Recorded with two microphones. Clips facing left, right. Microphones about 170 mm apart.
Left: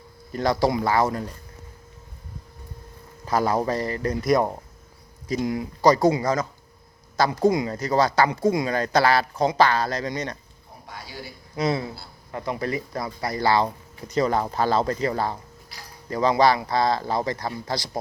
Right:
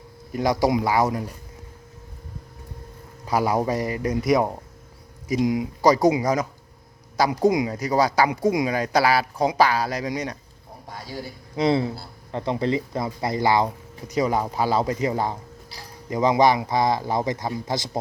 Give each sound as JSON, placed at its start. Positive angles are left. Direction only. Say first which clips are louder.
{"t": 0.3, "sound": "speech", "louder": "right 1 dB", "side_deg": -15}
{"t": 3.2, "sound": "speech", "louder": "right 1 dB", "side_deg": -10}
{"t": 11.5, "sound": "speech", "louder": "right 4 dB", "side_deg": -25}